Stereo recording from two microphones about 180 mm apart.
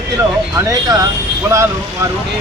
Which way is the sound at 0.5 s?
20° right (ahead or behind).